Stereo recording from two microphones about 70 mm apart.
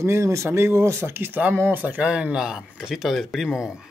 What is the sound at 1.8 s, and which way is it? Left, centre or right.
Speech, centre.